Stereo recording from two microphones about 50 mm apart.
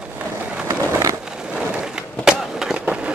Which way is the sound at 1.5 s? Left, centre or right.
Centre.